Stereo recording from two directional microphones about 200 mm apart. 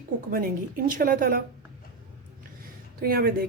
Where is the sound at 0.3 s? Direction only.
45° right (ahead or behind).